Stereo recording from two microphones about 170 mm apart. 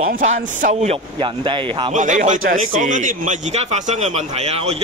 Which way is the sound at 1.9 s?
45° right (ahead or behind).